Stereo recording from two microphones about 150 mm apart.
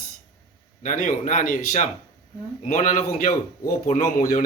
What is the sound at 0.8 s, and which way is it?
Speech, 60° left (ahead or behind).